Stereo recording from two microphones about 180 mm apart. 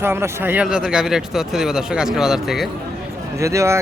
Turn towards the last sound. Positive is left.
turn(degrees=-15)  # may be behind; listen again after turning